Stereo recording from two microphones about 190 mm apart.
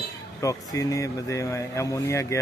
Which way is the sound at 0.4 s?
15° left (ahead or behind).